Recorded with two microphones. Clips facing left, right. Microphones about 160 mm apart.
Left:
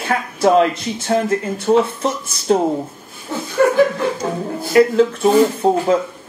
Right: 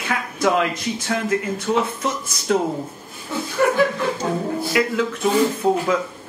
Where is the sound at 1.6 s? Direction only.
35° left (ahead or behind).